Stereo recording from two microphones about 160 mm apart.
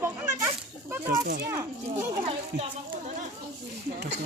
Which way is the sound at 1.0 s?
90° right.